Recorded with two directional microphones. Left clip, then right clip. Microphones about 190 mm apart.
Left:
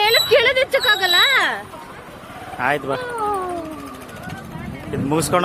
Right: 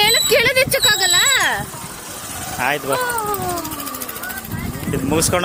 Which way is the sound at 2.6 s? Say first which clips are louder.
Even; centre (ahead or behind).